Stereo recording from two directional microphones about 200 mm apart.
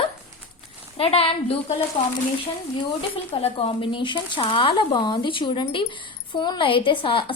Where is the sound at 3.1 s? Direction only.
30° left (ahead or behind).